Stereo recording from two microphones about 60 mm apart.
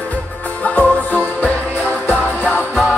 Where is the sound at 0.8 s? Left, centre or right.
Left.